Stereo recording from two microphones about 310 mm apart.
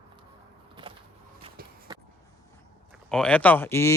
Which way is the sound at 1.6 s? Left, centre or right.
Right.